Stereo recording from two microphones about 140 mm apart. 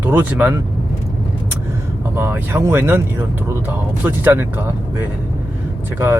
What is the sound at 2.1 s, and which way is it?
Speech, 20° right (ahead or behind).